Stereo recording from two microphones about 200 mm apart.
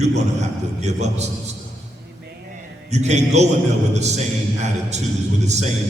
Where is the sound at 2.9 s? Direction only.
35° right (ahead or behind).